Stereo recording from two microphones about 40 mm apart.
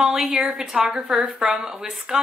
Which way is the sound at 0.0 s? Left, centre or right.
Centre.